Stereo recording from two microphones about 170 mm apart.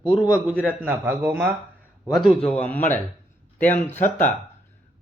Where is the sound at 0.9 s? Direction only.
15° right (ahead or behind).